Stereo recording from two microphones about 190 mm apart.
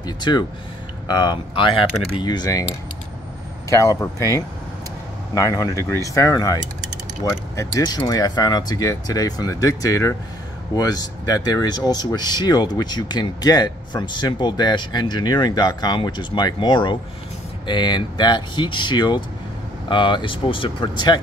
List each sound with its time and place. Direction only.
0.0 s a sound: 20° left (ahead or behind)
1.0 s speech: 20° left (ahead or behind)
3.7 s speech: 15° left (ahead or behind)